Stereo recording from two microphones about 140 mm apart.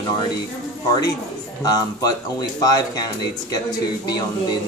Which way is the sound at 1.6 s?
25° left (ahead or behind).